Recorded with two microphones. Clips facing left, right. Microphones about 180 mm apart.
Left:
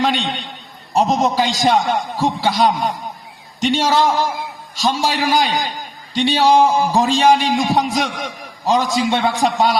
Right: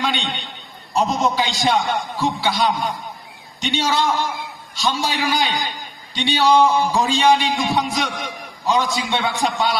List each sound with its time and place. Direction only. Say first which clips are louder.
0.9 s a man's voice: left 3 dB; 45° left (ahead or behind)